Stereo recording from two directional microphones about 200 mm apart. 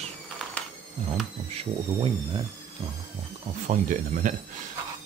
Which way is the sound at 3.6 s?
40° right (ahead or behind).